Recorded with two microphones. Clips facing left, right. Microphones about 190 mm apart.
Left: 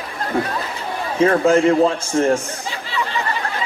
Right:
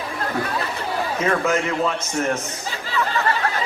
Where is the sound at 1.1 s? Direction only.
30° left (ahead or behind).